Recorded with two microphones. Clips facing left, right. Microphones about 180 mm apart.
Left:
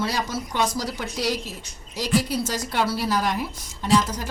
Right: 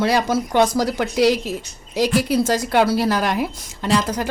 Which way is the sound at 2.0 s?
55° right (ahead or behind).